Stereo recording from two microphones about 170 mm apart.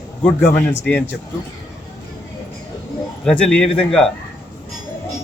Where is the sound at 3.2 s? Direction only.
5° left (ahead or behind).